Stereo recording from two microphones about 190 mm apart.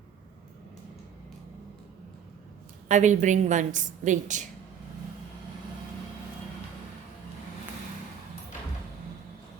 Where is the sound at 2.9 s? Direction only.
40° right (ahead or behind).